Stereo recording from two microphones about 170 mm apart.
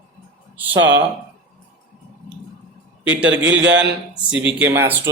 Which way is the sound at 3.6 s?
90° right.